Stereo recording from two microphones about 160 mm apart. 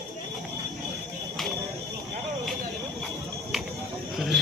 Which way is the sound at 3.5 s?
Centre (ahead or behind).